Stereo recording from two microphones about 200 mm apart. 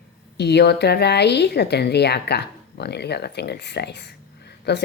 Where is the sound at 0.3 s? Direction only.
55° left (ahead or behind).